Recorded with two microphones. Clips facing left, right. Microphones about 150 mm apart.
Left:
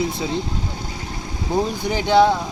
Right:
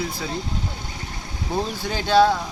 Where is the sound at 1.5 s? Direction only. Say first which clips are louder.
Left 5 dB; 15° left (ahead or behind).